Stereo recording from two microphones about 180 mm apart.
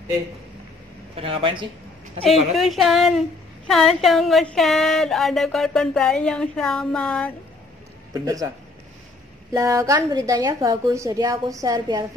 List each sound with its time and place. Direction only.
1.1 s a woman's voice: 30° right (ahead or behind)
2.2 s a woman's voice: centre (ahead or behind)
8.1 s a woman's voice: 20° right (ahead or behind)
9.5 s a woman's voice: 15° right (ahead or behind)